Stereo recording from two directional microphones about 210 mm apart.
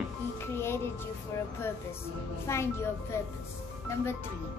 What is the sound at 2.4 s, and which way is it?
Speech, 10° left (ahead or behind).